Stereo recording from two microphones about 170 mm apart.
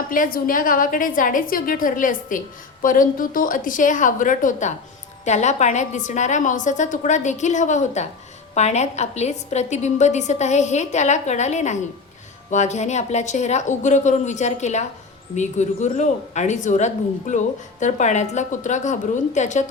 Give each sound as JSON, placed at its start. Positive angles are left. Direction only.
{"t": 0.1, "sound": "speech", "side_deg": 55}